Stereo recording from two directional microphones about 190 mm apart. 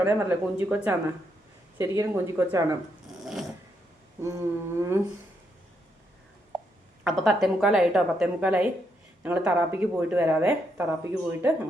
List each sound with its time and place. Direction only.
0.0 s speech: 10° right (ahead or behind)
4.2 s speech: 15° right (ahead or behind)
7.0 s a woman's voice: centre (ahead or behind)